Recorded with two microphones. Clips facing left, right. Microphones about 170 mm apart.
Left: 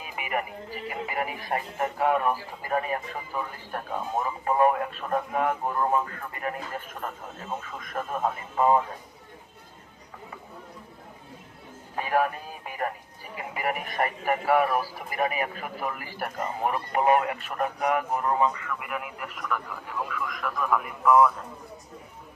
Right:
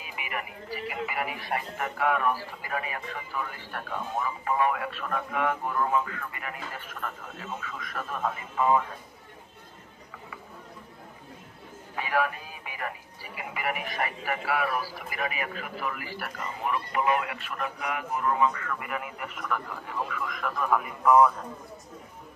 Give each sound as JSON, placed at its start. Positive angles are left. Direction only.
{"t": 0.0, "sound": "speech", "side_deg": 40}
{"t": 11.9, "sound": "music", "side_deg": 45}
{"t": 13.3, "sound": "a man's voice", "side_deg": 40}
{"t": 18.7, "sound": "speech", "side_deg": 0}